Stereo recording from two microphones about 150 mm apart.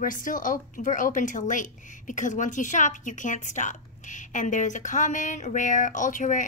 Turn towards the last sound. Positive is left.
turn(degrees=60)  # may be behind; listen again after turning